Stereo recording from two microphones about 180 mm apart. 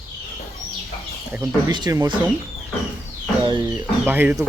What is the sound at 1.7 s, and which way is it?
Speech, 25° right (ahead or behind).